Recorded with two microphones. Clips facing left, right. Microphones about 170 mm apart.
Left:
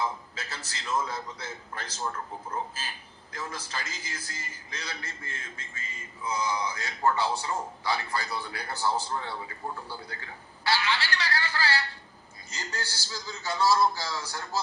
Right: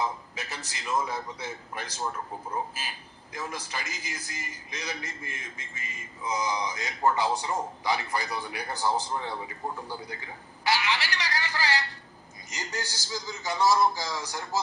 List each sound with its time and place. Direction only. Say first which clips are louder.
0.0 s a man's voice: right 1 dB; 15° right (ahead or behind)